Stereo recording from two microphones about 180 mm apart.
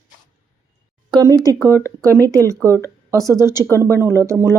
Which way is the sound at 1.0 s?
20° right (ahead or behind).